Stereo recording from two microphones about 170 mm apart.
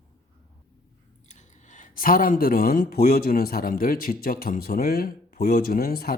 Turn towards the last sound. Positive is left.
turn(degrees=60)  # may be behind; listen again after turning